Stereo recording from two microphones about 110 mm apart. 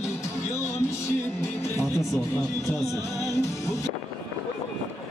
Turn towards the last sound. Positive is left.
turn(degrees=25)  # may be behind; listen again after turning